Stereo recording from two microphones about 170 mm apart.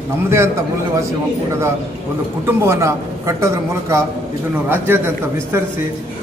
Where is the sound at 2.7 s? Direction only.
15° right (ahead or behind).